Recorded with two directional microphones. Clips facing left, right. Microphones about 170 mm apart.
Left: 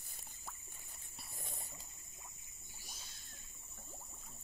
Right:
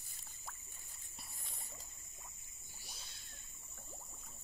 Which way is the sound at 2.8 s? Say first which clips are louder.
Even; 45° left (ahead or behind).